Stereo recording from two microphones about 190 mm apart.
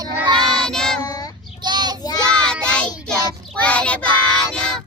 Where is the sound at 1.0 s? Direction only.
20° left (ahead or behind).